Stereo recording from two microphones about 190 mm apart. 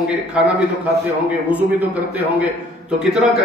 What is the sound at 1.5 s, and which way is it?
Speech, 10° right (ahead or behind).